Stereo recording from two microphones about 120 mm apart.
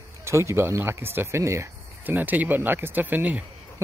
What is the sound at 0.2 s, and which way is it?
Speech, 25° right (ahead or behind).